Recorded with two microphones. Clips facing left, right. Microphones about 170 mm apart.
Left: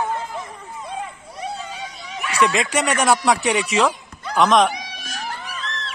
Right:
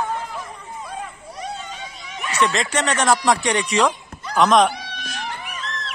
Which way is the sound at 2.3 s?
10° left (ahead or behind).